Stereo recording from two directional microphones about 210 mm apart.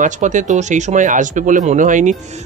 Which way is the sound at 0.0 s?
35° right (ahead or behind).